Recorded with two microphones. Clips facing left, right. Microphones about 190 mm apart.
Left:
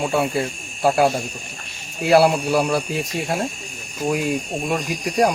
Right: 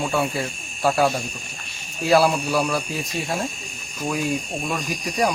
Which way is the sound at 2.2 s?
20° left (ahead or behind).